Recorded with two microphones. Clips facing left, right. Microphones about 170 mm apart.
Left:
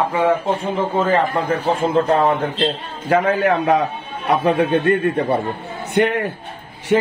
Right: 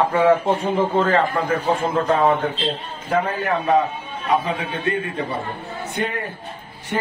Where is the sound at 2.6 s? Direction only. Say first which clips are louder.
Left 4 dB; 80° left.